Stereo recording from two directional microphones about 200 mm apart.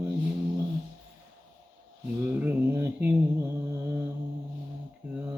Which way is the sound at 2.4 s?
10° right (ahead or behind).